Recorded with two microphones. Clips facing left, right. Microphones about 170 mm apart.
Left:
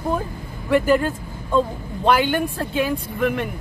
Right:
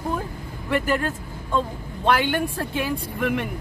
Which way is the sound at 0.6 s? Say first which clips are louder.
Left 6 dB; 5° left (ahead or behind).